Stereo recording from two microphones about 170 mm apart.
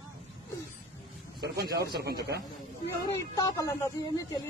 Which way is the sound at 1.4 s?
70° right (ahead or behind).